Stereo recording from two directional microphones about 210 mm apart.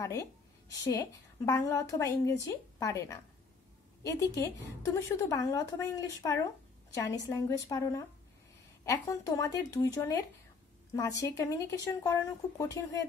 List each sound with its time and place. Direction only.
0.0 s a woman's voice: 15° left (ahead or behind)